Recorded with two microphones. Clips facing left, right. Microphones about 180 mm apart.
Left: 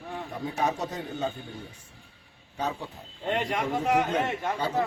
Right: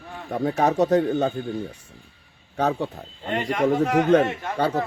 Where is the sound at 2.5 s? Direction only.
70° right (ahead or behind).